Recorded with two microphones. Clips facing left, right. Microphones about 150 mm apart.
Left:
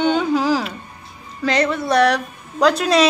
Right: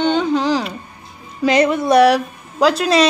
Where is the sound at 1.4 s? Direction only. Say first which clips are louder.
Right 4 dB; 10° right (ahead or behind).